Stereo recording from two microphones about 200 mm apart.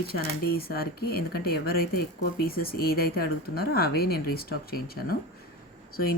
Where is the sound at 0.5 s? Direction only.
50° left (ahead or behind).